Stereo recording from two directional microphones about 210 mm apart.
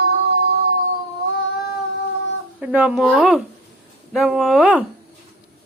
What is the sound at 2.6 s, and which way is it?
A woman's voice, 5° right (ahead or behind).